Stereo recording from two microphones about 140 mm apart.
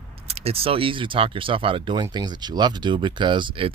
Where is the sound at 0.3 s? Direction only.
45° right (ahead or behind).